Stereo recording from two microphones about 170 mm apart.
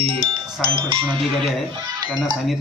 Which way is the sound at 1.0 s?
Centre (ahead or behind).